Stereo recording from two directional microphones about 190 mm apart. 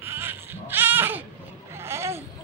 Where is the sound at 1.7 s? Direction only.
15° right (ahead or behind).